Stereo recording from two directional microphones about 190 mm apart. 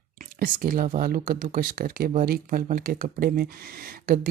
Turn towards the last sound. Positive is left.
turn(degrees=-50)  # may be behind; listen again after turning